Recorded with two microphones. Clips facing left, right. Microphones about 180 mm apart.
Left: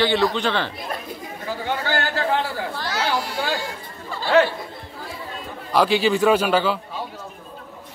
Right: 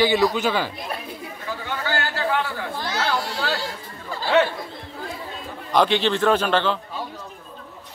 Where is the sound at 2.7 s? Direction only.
20° right (ahead or behind).